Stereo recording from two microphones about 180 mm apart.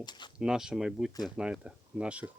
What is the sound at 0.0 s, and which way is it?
Speech, 25° left (ahead or behind).